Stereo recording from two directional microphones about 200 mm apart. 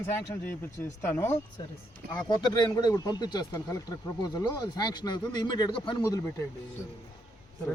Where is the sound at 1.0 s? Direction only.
10° left (ahead or behind).